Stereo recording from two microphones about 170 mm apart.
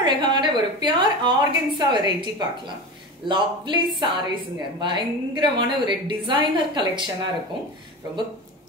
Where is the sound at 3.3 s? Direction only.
25° right (ahead or behind).